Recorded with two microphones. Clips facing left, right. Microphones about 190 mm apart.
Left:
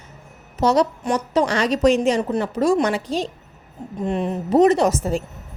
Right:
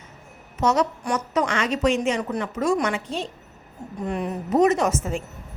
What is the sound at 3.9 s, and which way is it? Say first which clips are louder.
A woman's voice: left 4 dB; 25° left (ahead or behind).